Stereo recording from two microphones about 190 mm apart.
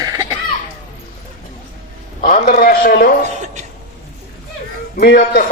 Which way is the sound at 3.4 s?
40° right (ahead or behind).